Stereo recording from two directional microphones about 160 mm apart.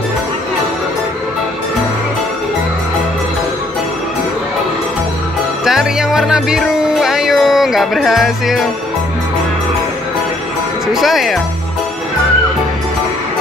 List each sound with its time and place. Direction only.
5.7 s music: 5° right (ahead or behind)
10.9 s speech: centre (ahead or behind)